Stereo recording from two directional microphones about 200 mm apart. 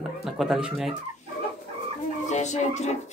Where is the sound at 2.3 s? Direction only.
35° left (ahead or behind).